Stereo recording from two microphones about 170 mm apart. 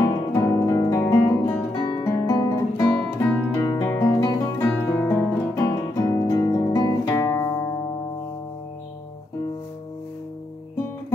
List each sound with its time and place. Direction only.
0.3 s guitar: 20° left (ahead or behind)